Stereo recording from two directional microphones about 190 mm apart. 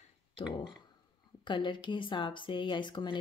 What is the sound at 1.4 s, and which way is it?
Speech, 25° left (ahead or behind).